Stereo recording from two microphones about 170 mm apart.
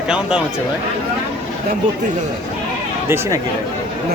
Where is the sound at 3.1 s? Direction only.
15° right (ahead or behind).